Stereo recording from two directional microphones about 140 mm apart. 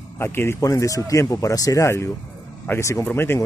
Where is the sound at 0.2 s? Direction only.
15° left (ahead or behind).